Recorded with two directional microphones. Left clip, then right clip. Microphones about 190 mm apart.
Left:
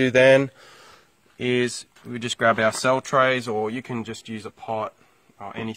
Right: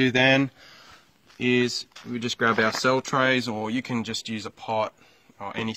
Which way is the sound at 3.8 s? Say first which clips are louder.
Right 2 dB; 15° left (ahead or behind).